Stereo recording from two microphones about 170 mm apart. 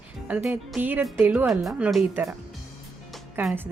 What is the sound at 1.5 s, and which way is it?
Speech, centre (ahead or behind).